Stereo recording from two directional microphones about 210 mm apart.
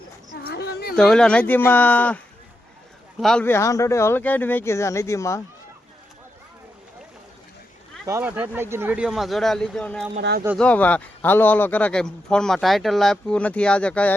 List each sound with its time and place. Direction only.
0.4 s a sound: 50° left (ahead or behind)
0.9 s speech: 5° left (ahead or behind)
8.0 s speech: 10° right (ahead or behind); by 10.1 s 5° left (ahead or behind)
10.2 s speech: 45° right (ahead or behind)
10.6 s speech: 5° left (ahead or behind)